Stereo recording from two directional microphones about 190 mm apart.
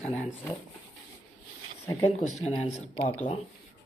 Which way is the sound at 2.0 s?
40° left (ahead or behind).